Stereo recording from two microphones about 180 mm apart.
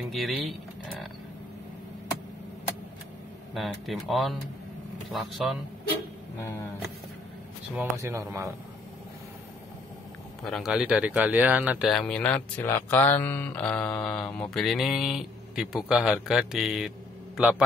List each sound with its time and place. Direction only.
0.0 s speech: centre (ahead or behind)
3.5 s speech: centre (ahead or behind)
6.4 s vehicle: 15° left (ahead or behind)
8.0 s speech: 15° right (ahead or behind)
10.4 s speech: centre (ahead or behind)